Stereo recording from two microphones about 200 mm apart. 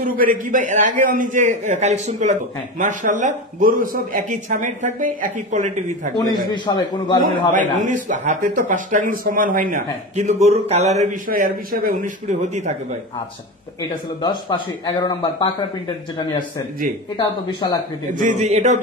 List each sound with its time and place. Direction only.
0.0 s speech: 45° right (ahead or behind)
6.5 s speech: 20° left (ahead or behind)
7.8 s speech: 40° right (ahead or behind)
14.2 s speech: 20° left (ahead or behind)
18.1 s speech: 35° right (ahead or behind)